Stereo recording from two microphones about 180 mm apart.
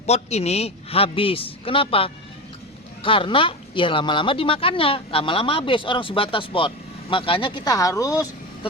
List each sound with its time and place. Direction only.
0.0 s a man's voice: 35° left (ahead or behind); by 8.3 s 20° left (ahead or behind)